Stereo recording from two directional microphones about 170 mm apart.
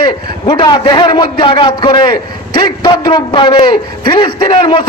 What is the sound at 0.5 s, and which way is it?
A man's voice, 25° left (ahead or behind).